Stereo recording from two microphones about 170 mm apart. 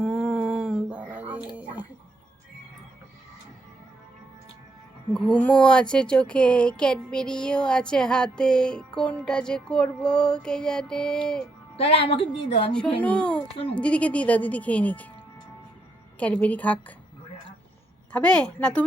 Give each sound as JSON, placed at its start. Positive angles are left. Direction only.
{"t": 0.0, "sound": "a sound", "side_deg": -5}
{"t": 5.1, "sound": "speech", "side_deg": 5}
{"t": 11.8, "sound": "a woman's voice", "side_deg": 35}
{"t": 13.0, "sound": "speech", "side_deg": 5}
{"t": 16.1, "sound": "speech", "side_deg": 10}
{"t": 18.1, "sound": "speech", "side_deg": 5}